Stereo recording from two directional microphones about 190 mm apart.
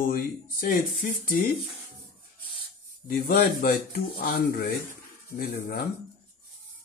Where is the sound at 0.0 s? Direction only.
50° left (ahead or behind).